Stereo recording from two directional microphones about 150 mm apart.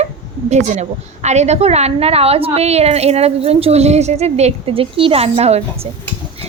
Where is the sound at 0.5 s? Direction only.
50° right (ahead or behind).